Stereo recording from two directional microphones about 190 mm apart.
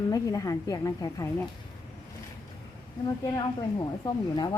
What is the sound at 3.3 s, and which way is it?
A woman's voice, 20° left (ahead or behind).